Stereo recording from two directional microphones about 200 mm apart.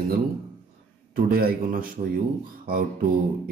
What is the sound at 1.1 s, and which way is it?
Speech, 50° right (ahead or behind).